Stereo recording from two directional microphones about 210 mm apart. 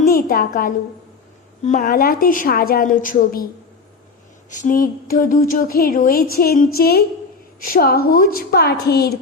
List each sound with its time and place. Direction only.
0.1 s a woman's voice: 45° left (ahead or behind)
4.6 s a woman's voice: 40° left (ahead or behind)